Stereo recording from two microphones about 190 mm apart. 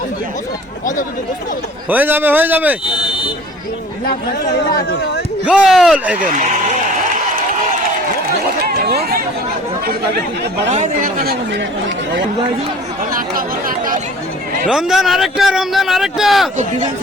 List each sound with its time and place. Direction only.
1.9 s speech: 10° right (ahead or behind)
4.8 s speech: 60° left (ahead or behind)
5.5 s speech: 5° right (ahead or behind)
8.6 s chatter: 55° right (ahead or behind)
10.7 s speech: 35° right (ahead or behind)
13.1 s speech: 45° right (ahead or behind)
14.7 s speech: centre (ahead or behind)